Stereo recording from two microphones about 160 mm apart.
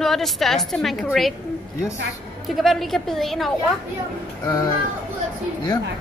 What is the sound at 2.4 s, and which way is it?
A woman's voice, centre (ahead or behind).